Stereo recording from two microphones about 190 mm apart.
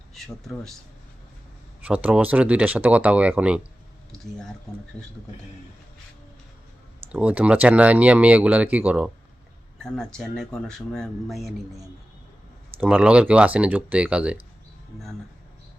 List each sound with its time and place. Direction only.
0.1 s speech: centre (ahead or behind)
1.8 s speech: 10° right (ahead or behind)
4.9 s speech: 5° left (ahead or behind)
7.1 s speech: 5° right (ahead or behind)